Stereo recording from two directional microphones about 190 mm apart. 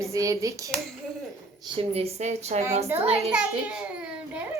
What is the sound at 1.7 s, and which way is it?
Speech, 30° right (ahead or behind).